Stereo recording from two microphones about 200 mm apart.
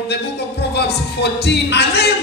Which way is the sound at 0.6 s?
55° left (ahead or behind).